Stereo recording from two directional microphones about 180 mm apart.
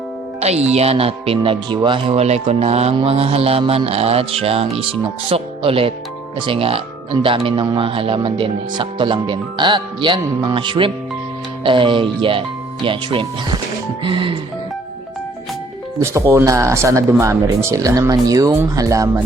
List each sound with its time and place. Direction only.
0.3 s speech: 35° right (ahead or behind)
16.0 s speech: 15° right (ahead or behind)